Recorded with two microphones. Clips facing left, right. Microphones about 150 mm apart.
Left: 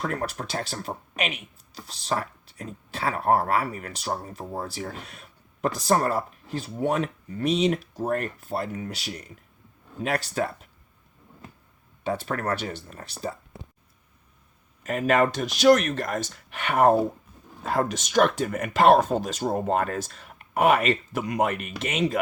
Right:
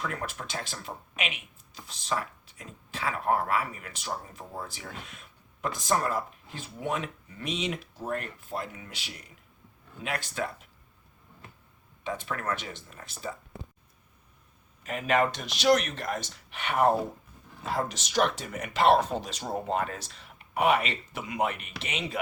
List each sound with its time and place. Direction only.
0.0 s speech: 40° left (ahead or behind)
12.0 s speech: 35° left (ahead or behind)
14.8 s speech: 45° left (ahead or behind)